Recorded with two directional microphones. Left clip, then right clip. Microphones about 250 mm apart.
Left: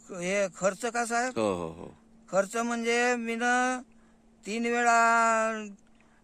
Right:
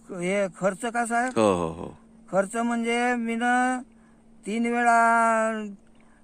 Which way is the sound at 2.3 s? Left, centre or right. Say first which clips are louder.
Right 3 dB; centre.